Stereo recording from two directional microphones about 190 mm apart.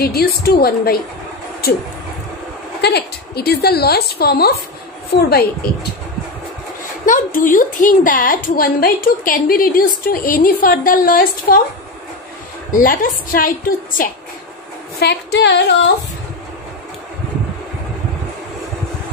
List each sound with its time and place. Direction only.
0.0 s a woman's voice: 55° left (ahead or behind)
2.8 s a woman's voice: 55° left (ahead or behind)
7.1 s a woman's voice: 45° left (ahead or behind)
12.7 s a woman's voice: 45° left (ahead or behind)
15.0 s a woman's voice: 60° left (ahead or behind)